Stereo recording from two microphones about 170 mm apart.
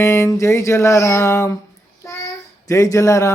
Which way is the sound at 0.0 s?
15° left (ahead or behind).